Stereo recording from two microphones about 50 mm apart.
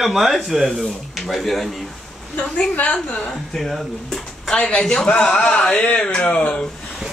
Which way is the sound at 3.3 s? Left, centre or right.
Centre.